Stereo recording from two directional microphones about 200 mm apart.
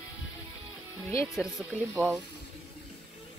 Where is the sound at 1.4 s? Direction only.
10° right (ahead or behind).